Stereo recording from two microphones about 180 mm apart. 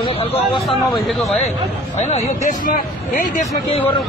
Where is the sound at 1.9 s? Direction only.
40° left (ahead or behind).